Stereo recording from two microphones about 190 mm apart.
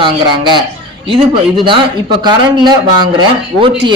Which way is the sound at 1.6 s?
25° right (ahead or behind).